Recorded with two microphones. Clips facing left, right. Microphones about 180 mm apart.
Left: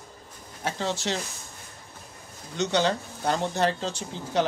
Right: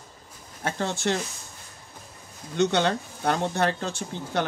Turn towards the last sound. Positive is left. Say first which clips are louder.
# left 2 dB
turn(degrees=-55)  # may be behind; listen again after turning